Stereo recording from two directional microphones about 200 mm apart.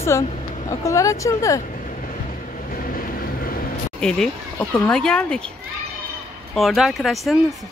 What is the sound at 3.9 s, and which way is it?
A woman's voice, 5° left (ahead or behind).